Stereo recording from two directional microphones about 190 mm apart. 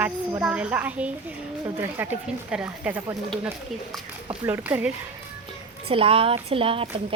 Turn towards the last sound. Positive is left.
turn(degrees=-30)  # may be behind; listen again after turning